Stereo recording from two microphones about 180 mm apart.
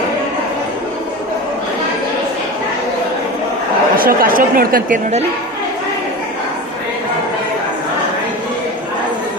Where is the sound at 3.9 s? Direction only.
55° right (ahead or behind).